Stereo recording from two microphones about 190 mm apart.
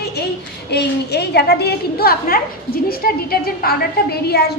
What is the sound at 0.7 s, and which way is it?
A woman's voice, 60° left (ahead or behind).